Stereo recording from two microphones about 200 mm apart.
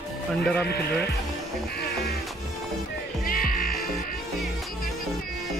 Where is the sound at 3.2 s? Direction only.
45° left (ahead or behind).